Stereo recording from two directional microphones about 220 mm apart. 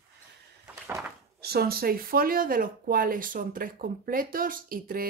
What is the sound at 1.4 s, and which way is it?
Speech, 45° right (ahead or behind).